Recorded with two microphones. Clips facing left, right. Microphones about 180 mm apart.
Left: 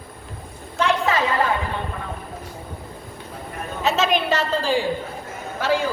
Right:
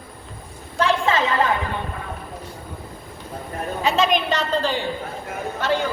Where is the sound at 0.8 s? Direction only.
30° right (ahead or behind).